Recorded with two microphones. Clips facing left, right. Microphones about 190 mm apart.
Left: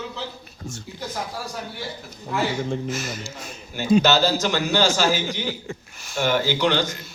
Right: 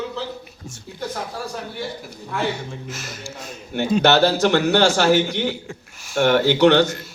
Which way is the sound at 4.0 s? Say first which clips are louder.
Right 4 dB; 65° right (ahead or behind).